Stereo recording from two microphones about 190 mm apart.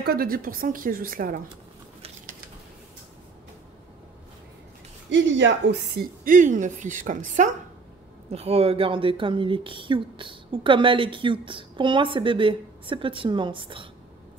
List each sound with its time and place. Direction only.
0.0 s speech: 55° right (ahead or behind)
5.1 s a woman's voice: 75° right (ahead or behind); by 13.8 s 25° right (ahead or behind)